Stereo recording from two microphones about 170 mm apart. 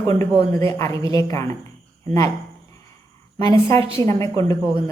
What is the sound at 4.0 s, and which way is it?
Speech, 20° left (ahead or behind).